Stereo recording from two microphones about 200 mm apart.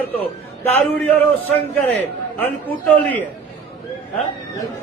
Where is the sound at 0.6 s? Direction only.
10° left (ahead or behind).